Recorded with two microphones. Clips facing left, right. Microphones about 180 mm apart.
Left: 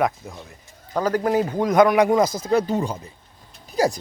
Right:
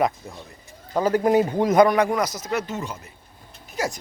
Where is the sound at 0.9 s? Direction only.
10° right (ahead or behind).